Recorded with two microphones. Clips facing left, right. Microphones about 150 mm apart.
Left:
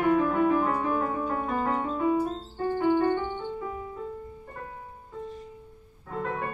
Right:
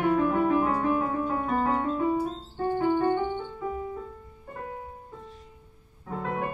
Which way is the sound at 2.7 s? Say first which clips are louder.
Left 1 dB; 15° right (ahead or behind).